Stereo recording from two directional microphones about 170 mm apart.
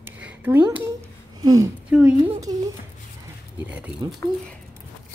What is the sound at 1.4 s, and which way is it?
Speech, 20° right (ahead or behind).